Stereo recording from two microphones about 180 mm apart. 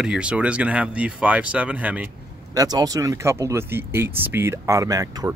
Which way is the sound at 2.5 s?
20° right (ahead or behind).